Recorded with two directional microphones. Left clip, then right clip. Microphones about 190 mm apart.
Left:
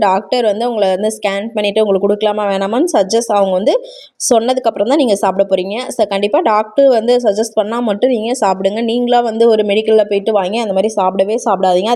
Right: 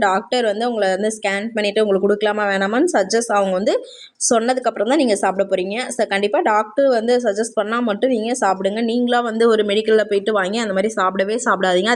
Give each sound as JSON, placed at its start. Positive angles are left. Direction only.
{"t": 0.0, "sound": "speech", "side_deg": 25}